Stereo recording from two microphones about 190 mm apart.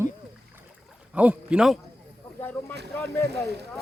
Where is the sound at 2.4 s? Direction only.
10° left (ahead or behind).